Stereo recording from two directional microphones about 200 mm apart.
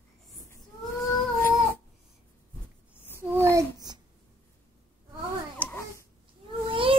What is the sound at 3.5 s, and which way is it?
Babbling, 20° right (ahead or behind).